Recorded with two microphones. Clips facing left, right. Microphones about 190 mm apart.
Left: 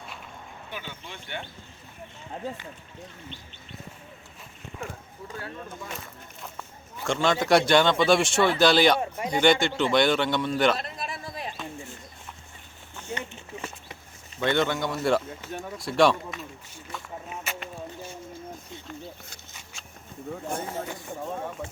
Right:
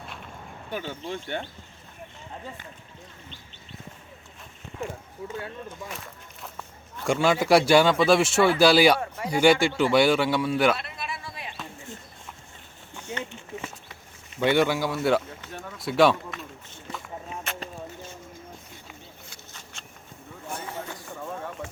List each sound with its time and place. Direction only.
0.7 s speech: 40° right (ahead or behind)
6.4 s walk: centre (ahead or behind)
7.0 s a man's voice: 10° right (ahead or behind)
9.0 s speech: 20° left (ahead or behind)
9.3 s a man's voice: 10° right (ahead or behind)
10.8 s a sound: 40° left (ahead or behind)
13.0 s a sound: 10° right (ahead or behind)
14.3 s speech: 10° right (ahead or behind)
20.5 s a sound: 50° left (ahead or behind)